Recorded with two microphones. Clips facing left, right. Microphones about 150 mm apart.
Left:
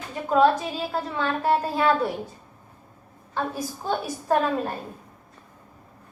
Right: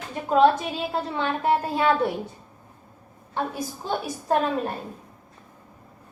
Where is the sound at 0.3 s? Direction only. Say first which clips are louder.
Right 1 dB; 25° right (ahead or behind).